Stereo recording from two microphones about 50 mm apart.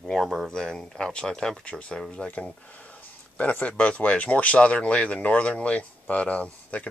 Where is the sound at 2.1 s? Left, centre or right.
Left.